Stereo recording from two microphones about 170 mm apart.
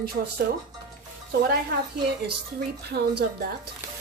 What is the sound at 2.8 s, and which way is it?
Speech, 75° right (ahead or behind).